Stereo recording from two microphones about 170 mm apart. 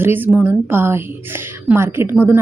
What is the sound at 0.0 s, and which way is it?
A woman's voice, 10° right (ahead or behind).